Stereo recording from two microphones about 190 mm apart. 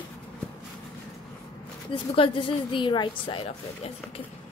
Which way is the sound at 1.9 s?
25° left (ahead or behind).